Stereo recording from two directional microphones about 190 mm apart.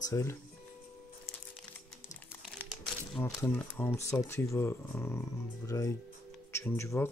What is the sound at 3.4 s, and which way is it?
Speech, 10° left (ahead or behind).